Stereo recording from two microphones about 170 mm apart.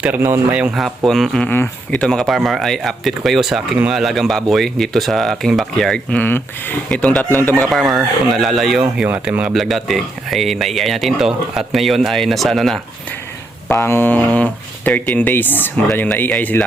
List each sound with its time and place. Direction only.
0.0 s speech: 10° right (ahead or behind)
13.7 s speech: 15° left (ahead or behind)